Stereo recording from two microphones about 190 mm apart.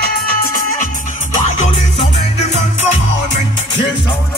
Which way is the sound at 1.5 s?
35° left (ahead or behind).